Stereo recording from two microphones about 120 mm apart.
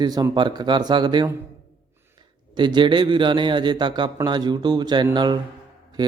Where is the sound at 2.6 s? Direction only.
40° right (ahead or behind).